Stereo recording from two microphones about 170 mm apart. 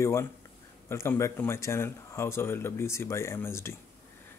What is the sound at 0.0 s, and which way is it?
Speech, 15° left (ahead or behind).